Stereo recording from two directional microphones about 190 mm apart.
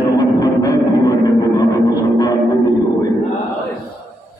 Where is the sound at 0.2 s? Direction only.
20° left (ahead or behind).